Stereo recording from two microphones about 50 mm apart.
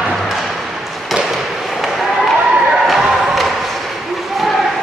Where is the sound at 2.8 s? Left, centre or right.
Centre.